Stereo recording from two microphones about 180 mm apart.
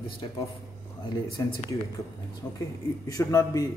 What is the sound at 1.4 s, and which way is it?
Speech, 20° left (ahead or behind).